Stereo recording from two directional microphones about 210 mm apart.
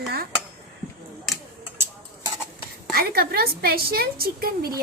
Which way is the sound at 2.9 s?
45° right (ahead or behind).